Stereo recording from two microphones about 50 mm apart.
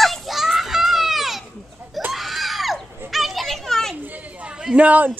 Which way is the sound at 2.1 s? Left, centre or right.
Centre.